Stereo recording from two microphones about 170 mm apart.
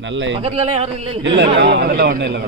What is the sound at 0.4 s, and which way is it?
Speech, 35° right (ahead or behind).